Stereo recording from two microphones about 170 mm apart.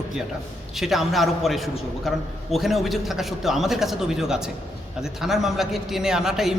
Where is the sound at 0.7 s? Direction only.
Centre (ahead or behind).